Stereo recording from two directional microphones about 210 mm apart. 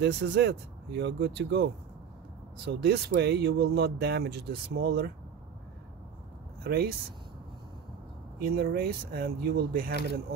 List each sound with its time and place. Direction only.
0.0 s speech: 55° right (ahead or behind)
6.6 s speech: 50° right (ahead or behind)
8.4 s speech: 45° right (ahead or behind)